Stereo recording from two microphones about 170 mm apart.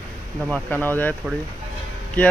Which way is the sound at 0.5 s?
10° left (ahead or behind).